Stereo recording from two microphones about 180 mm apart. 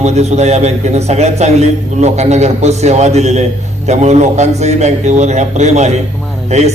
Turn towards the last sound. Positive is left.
turn(degrees=-40)  # may be behind; listen again after turning